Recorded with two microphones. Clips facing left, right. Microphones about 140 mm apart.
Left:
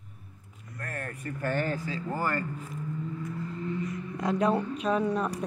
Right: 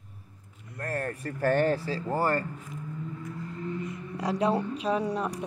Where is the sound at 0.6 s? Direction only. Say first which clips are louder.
Right 6 dB; 30° right (ahead or behind).